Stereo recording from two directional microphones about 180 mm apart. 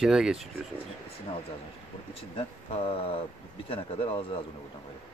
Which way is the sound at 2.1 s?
30° left (ahead or behind).